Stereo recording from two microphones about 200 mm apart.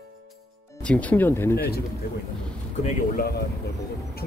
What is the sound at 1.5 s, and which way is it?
Speech, 50° left (ahead or behind).